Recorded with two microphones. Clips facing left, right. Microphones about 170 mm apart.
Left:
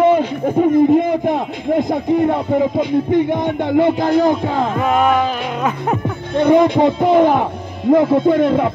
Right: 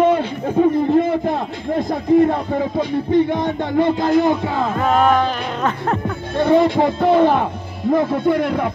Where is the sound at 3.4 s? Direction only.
15° left (ahead or behind).